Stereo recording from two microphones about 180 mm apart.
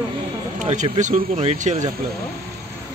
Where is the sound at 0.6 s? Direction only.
40° right (ahead or behind).